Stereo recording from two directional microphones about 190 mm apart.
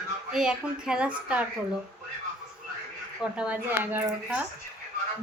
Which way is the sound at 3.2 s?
5° right (ahead or behind).